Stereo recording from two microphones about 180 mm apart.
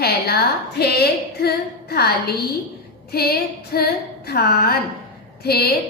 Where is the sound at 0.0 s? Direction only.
60° left (ahead or behind).